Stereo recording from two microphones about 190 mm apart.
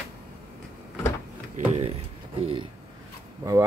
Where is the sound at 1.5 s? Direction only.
35° right (ahead or behind).